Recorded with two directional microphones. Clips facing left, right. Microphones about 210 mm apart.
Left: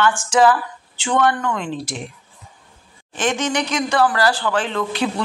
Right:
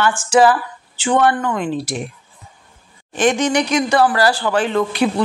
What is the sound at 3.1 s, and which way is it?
Speech, 15° right (ahead or behind).